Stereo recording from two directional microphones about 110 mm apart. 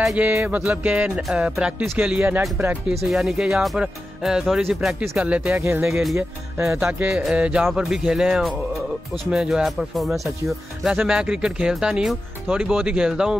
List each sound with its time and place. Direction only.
0.0 s music: 10° right (ahead or behind)
0.3 s speech: 20° right (ahead or behind)
2.9 s speech: centre (ahead or behind)
5.6 s speech: 25° right (ahead or behind)
6.8 s speech: 15° right (ahead or behind)